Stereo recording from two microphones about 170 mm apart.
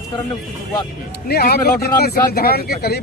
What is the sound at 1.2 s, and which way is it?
Speech, 65° left (ahead or behind).